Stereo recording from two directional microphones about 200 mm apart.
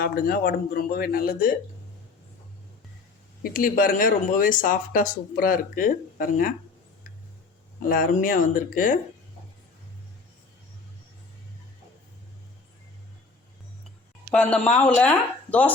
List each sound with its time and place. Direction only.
0.0 s speech: 50° left (ahead or behind)
3.4 s speech: 45° left (ahead or behind)
7.8 s speech: 45° left (ahead or behind)
14.3 s speech: 5° left (ahead or behind)